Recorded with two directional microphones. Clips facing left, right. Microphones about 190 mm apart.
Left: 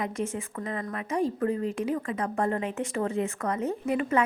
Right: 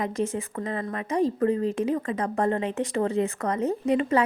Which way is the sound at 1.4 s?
35° right (ahead or behind).